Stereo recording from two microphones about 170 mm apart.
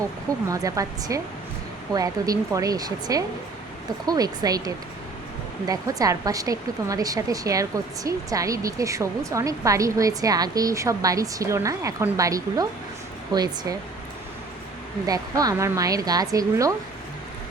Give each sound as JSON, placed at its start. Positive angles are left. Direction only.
{"t": 0.4, "sound": "a woman's voice", "side_deg": -20}
{"t": 15.0, "sound": "a woman's voice", "side_deg": -20}